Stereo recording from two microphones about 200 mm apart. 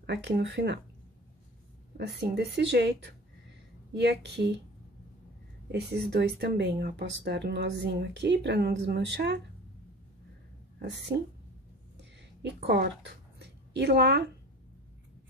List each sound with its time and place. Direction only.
0.0 s speech: 60° right (ahead or behind)
2.0 s speech: 55° right (ahead or behind)
5.7 s speech: 55° right (ahead or behind)
12.0 s a sound: 60° right (ahead or behind)
12.6 s speech: 55° right (ahead or behind)